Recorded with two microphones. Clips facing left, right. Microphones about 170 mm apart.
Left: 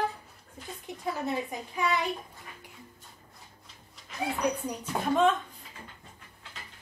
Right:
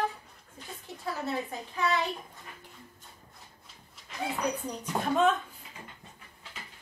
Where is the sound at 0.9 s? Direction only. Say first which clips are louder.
Left 5 dB; 20° left (ahead or behind).